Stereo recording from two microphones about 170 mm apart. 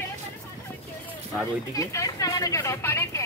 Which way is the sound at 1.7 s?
20° left (ahead or behind).